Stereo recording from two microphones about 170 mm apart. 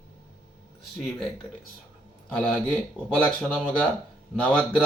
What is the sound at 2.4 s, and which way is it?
Speech, 5° left (ahead or behind).